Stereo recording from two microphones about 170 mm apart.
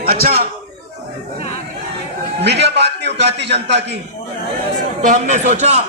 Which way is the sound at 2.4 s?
90° right.